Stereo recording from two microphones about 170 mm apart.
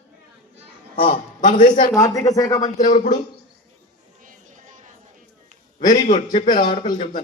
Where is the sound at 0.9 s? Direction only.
30° left (ahead or behind).